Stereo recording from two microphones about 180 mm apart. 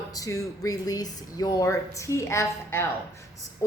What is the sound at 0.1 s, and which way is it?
A woman's voice, 20° left (ahead or behind).